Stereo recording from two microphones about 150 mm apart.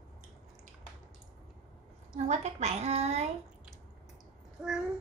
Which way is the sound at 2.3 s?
45° right (ahead or behind).